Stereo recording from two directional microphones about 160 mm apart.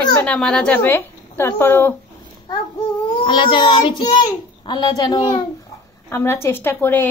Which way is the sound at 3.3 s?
30° left (ahead or behind).